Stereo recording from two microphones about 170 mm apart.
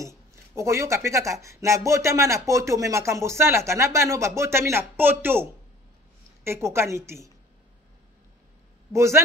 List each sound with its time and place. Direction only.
0.6 s speech: 15° right (ahead or behind)
8.9 s speech: 15° right (ahead or behind)